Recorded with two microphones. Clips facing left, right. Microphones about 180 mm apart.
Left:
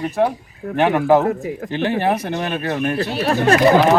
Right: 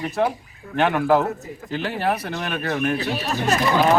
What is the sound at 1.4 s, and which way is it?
Speech, 70° left (ahead or behind).